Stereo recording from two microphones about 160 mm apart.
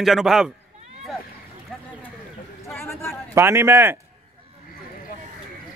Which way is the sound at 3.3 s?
15° right (ahead or behind).